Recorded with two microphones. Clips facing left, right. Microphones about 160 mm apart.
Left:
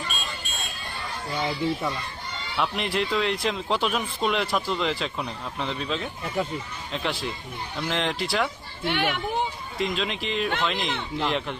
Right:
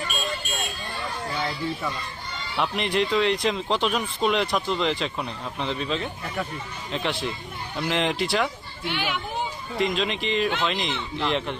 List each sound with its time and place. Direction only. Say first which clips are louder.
2.6 s speech: right 2 dB; centre (ahead or behind)
8.9 s a child's voice: left 3 dB; 55° left (ahead or behind)
9.7 s speech: right 4 dB; centre (ahead or behind)